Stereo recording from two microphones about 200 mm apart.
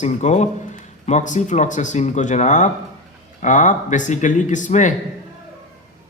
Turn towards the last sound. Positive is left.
turn(degrees=40)  # may be behind; listen again after turning